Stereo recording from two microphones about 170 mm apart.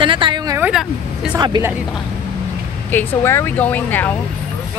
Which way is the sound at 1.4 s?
25° right (ahead or behind).